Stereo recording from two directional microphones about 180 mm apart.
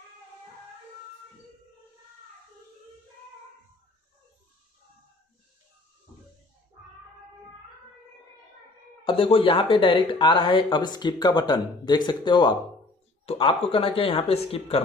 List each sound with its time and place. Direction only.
9.0 s speech: 30° left (ahead or behind)